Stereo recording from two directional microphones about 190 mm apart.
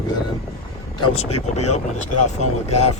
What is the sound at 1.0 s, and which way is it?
Speech, 35° left (ahead or behind).